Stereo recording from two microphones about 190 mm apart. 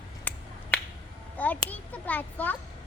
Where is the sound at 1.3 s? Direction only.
10° left (ahead or behind).